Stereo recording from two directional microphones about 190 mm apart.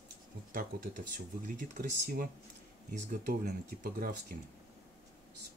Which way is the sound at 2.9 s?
40° right (ahead or behind).